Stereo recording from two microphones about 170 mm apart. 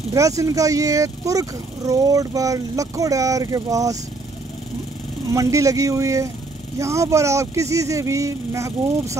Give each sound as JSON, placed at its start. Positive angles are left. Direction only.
{"t": 0.1, "sound": "speech", "side_deg": -20}
{"t": 5.3, "sound": "speech", "side_deg": -20}